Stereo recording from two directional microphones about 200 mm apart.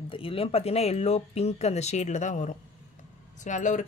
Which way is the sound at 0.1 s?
25° left (ahead or behind).